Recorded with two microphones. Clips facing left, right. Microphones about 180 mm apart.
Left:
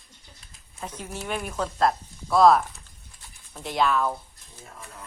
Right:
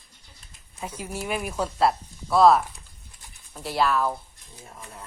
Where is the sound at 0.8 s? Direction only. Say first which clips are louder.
Right 2 dB; 10° right (ahead or behind).